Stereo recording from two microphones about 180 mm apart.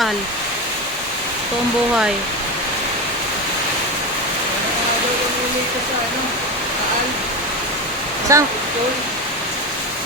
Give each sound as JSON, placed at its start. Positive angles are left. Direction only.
{"t": 8.3, "sound": "speech", "side_deg": -15}